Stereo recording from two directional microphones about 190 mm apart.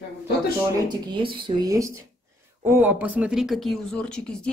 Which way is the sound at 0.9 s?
25° right (ahead or behind).